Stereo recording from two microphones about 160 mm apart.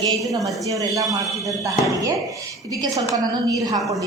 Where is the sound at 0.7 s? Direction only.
20° right (ahead or behind).